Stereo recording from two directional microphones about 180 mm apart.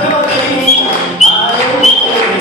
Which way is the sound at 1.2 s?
40° left (ahead or behind).